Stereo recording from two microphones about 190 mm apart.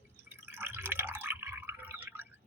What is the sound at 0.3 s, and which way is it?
Drip, 10° right (ahead or behind).